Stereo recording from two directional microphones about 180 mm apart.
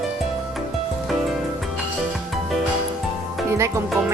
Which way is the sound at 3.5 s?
15° right (ahead or behind).